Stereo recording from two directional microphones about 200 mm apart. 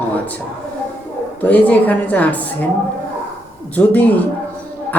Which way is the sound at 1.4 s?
10° left (ahead or behind).